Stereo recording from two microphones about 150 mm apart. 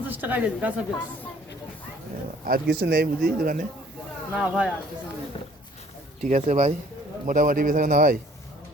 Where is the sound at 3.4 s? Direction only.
70° right (ahead or behind).